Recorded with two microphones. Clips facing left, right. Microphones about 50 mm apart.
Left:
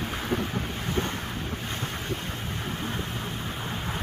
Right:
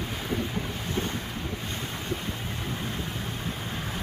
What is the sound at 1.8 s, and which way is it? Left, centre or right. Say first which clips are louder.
Vehicle: left 1 dB; left.